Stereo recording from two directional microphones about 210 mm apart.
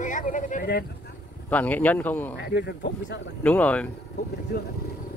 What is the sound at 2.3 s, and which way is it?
Speech, 50° left (ahead or behind).